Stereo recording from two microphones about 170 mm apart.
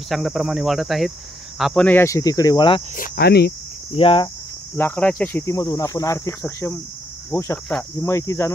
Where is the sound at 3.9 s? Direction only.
30° left (ahead or behind).